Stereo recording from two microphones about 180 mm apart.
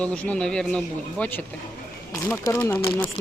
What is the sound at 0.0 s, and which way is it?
A man's voice, 5° left (ahead or behind).